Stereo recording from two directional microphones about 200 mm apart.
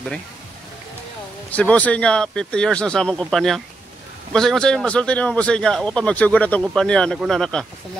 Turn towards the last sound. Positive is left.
turn(degrees=5)  # may be behind; listen again after turning